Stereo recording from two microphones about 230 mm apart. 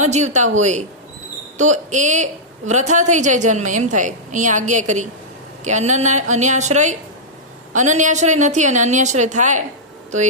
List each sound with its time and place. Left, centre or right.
0.0 s a woman's voice: right